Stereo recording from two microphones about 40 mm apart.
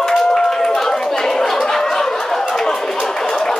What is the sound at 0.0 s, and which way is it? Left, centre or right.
Chatter, centre.